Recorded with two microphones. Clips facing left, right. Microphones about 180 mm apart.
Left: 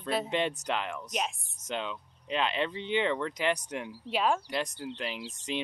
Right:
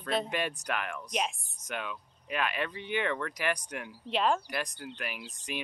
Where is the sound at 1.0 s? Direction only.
Centre (ahead or behind).